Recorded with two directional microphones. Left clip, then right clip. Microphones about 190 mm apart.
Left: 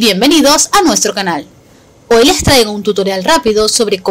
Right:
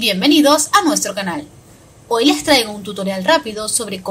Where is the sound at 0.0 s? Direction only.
40° left (ahead or behind).